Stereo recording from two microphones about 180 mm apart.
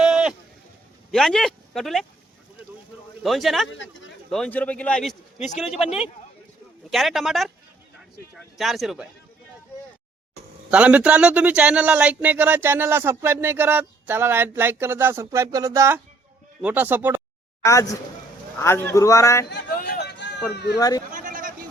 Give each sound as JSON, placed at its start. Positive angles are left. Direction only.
{"t": 0.0, "sound": "a sound", "side_deg": -5}
{"t": 1.1, "sound": "speech", "side_deg": 5}
{"t": 3.2, "sound": "speech", "side_deg": 0}
{"t": 3.7, "sound": "speech", "side_deg": 90}
{"t": 4.3, "sound": "speech", "side_deg": 5}
{"t": 6.9, "sound": "speech", "side_deg": 0}
{"t": 8.5, "sound": "speech", "side_deg": 0}
{"t": 10.7, "sound": "speech", "side_deg": -5}
{"t": 17.6, "sound": "speech", "side_deg": 15}
{"t": 19.5, "sound": "a sound", "side_deg": 50}
{"t": 20.5, "sound": "speech", "side_deg": 70}
{"t": 20.7, "sound": "speech", "side_deg": 20}
{"t": 21.1, "sound": "a sound", "side_deg": -45}